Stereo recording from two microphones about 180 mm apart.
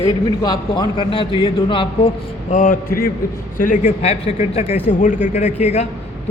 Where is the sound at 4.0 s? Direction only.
35° left (ahead or behind).